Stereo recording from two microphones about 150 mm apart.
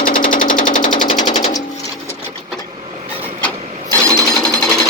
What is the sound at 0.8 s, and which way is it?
Sewing machine, 30° left (ahead or behind).